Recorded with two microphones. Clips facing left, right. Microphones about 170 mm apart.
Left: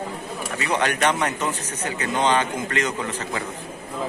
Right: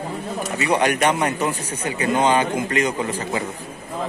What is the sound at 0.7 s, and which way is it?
Speech, 10° right (ahead or behind).